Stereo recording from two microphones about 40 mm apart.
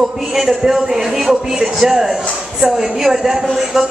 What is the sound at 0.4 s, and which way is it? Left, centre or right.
A woman's voice, centre.